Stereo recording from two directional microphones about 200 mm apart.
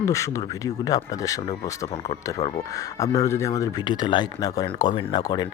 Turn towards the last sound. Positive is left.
turn(degrees=20)  # may be behind; listen again after turning